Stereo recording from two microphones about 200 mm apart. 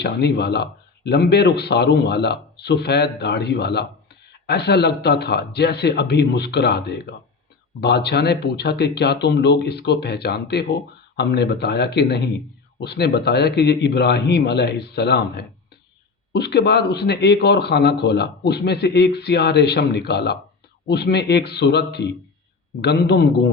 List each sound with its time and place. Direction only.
0.0 s a man's voice: 55° left (ahead or behind)